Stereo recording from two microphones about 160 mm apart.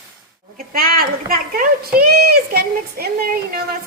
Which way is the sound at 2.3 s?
75° right (ahead or behind).